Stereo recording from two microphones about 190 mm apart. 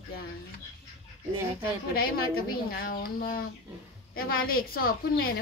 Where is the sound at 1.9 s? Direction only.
50° left (ahead or behind).